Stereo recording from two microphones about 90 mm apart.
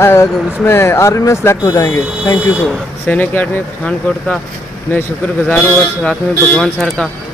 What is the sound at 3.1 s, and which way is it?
Speech, 15° left (ahead or behind).